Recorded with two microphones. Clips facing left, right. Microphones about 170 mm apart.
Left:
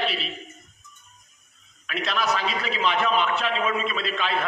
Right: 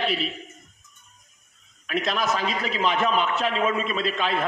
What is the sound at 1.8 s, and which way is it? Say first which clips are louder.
A man's voice: right 1 dB; 45° right (ahead or behind).